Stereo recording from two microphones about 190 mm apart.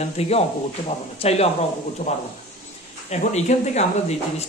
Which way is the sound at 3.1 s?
35° left (ahead or behind).